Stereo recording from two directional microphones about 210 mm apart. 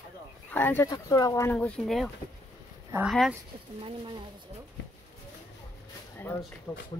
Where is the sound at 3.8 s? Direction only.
25° right (ahead or behind).